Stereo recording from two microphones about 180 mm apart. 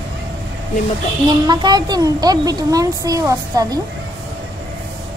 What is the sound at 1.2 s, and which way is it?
A woman's voice, 25° right (ahead or behind).